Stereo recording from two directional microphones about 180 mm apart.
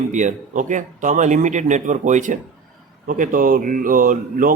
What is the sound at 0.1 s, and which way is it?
A man's voice, 45° right (ahead or behind).